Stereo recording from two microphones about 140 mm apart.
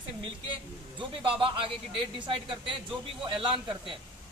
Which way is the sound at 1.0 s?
40° right (ahead or behind).